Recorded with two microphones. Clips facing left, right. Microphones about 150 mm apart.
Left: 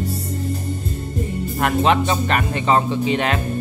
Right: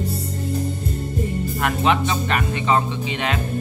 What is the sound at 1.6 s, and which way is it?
Speech, 40° left (ahead or behind).